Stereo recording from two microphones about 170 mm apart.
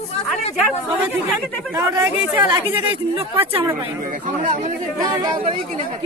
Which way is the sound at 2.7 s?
30° right (ahead or behind).